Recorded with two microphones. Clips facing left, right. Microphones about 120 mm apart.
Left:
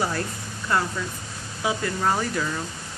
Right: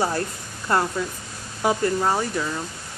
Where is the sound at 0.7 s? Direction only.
40° right (ahead or behind).